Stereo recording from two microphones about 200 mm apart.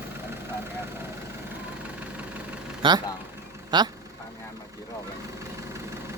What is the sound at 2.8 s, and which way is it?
Speech, 20° right (ahead or behind).